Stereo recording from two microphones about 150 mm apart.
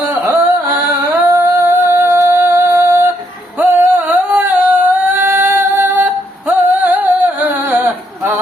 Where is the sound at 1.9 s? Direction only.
15° right (ahead or behind).